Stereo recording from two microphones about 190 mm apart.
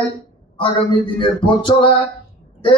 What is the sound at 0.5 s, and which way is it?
Speech, 25° left (ahead or behind).